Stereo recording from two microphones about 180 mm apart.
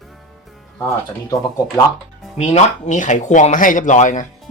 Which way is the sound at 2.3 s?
40° left (ahead or behind).